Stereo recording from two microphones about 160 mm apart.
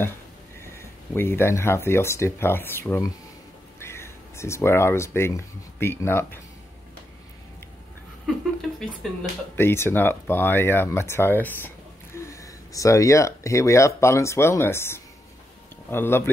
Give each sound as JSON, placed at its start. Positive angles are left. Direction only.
{"t": 1.1, "sound": "speech", "side_deg": 15}
{"t": 8.5, "sound": "a sound", "side_deg": 0}
{"t": 9.6, "sound": "speech", "side_deg": 15}